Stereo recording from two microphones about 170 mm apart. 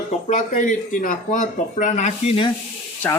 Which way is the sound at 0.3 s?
45° left (ahead or behind).